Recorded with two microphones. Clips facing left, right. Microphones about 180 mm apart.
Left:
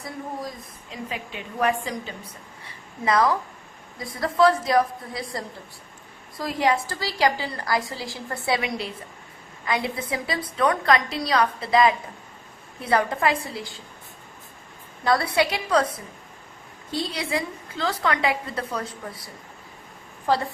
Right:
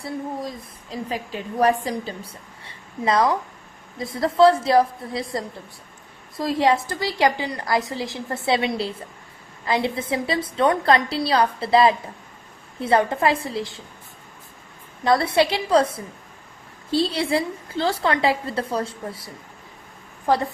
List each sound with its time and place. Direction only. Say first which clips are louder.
0.0 s a woman's voice: right 4 dB; 35° right (ahead or behind)
15.0 s a woman's voice: right 3 dB; 25° right (ahead or behind)